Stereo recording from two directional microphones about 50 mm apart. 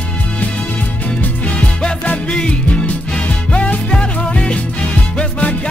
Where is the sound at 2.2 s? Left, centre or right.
Left.